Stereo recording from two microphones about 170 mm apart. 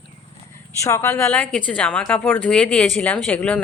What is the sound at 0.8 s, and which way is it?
A woman's voice, 15° left (ahead or behind).